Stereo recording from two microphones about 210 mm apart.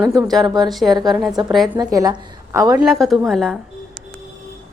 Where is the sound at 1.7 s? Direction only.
15° right (ahead or behind).